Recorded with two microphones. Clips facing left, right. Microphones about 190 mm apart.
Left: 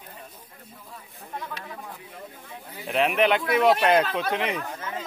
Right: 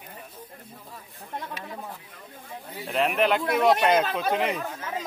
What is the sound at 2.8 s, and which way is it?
Speech, centre (ahead or behind).